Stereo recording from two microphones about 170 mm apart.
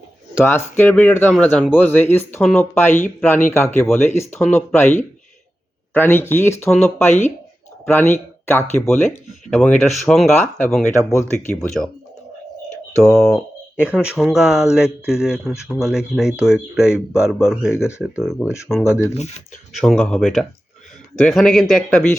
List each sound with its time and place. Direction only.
0.4 s speech: 15° left (ahead or behind)
9.5 s speech: centre (ahead or behind)
10.8 s speech: 15° left (ahead or behind)
11.5 s speech: centre (ahead or behind)
13.0 s speech: centre (ahead or behind)
19.8 s speech: 5° left (ahead or behind)